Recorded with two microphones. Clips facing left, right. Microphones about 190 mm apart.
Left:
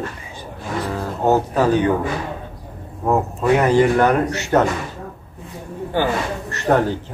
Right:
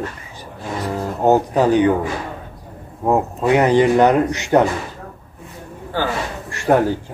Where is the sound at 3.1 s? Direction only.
15° right (ahead or behind).